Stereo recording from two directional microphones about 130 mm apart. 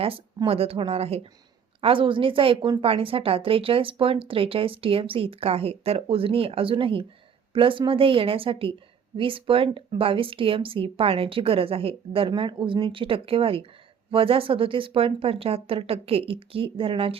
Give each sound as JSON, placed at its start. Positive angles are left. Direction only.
{"t": 0.4, "sound": "a woman's voice", "side_deg": -45}